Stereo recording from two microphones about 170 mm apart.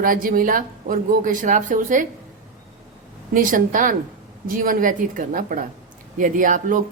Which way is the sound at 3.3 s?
55° right (ahead or behind).